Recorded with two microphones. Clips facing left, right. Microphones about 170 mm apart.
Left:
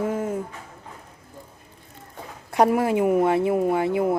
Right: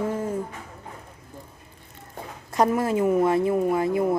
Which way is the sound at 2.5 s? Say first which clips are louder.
Left 2 dB; 15° left (ahead or behind).